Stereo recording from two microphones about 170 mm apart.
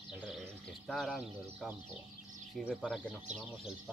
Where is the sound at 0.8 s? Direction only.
Centre (ahead or behind).